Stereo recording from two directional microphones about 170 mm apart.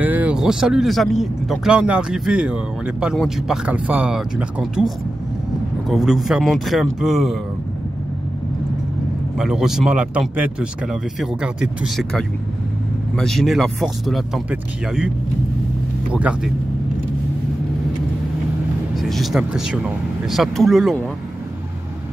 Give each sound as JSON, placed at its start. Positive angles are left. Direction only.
{"t": 0.0, "sound": "speech", "side_deg": -10}
{"t": 9.4, "sound": "speech", "side_deg": -5}
{"t": 16.1, "sound": "speech", "side_deg": -5}
{"t": 18.9, "sound": "speech", "side_deg": 0}